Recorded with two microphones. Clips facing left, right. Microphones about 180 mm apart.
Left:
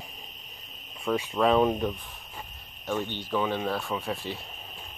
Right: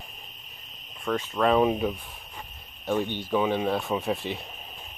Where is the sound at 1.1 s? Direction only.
5° left (ahead or behind); by 4.4 s 20° right (ahead or behind).